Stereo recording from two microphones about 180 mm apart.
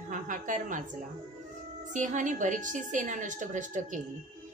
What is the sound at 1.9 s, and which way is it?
A woman's voice, 45° right (ahead or behind).